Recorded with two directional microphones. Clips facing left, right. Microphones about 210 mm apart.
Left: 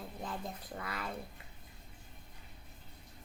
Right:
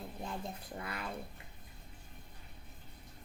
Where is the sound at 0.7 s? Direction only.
25° right (ahead or behind).